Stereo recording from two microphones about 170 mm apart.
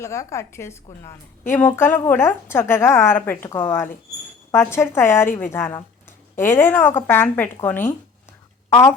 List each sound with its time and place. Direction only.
0.0 s speech: 15° left (ahead or behind)